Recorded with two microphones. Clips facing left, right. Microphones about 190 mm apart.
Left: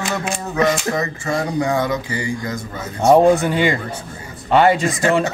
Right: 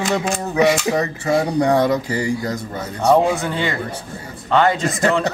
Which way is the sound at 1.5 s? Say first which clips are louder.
Right 3 dB; 35° right (ahead or behind).